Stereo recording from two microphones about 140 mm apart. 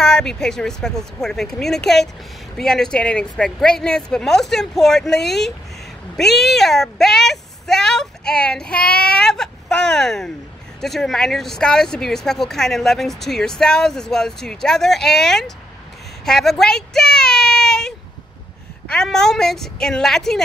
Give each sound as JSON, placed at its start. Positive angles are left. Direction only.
{"t": 0.0, "sound": "speech", "side_deg": 5}
{"t": 16.3, "sound": "a sound", "side_deg": 5}
{"t": 18.9, "sound": "speech", "side_deg": 5}